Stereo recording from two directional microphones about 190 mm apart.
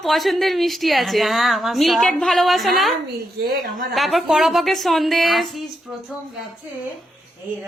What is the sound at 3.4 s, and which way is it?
Speech, 50° right (ahead or behind).